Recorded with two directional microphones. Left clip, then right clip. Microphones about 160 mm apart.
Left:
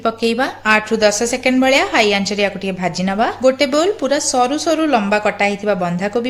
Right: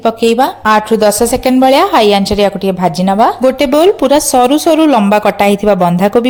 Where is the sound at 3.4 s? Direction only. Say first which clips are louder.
Right 5 dB; 50° right (ahead or behind).